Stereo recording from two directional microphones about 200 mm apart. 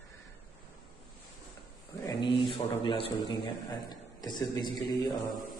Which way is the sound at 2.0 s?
25° left (ahead or behind).